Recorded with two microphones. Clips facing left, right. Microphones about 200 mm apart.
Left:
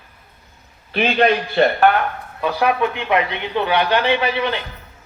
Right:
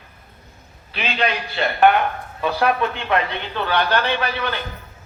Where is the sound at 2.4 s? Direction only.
10° left (ahead or behind).